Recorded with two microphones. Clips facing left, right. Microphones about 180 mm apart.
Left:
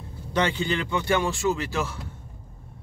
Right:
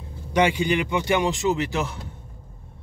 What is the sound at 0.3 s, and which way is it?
Speech, 10° right (ahead or behind).